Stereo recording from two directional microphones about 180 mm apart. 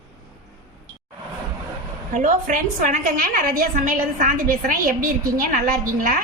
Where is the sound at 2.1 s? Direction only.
45° right (ahead or behind).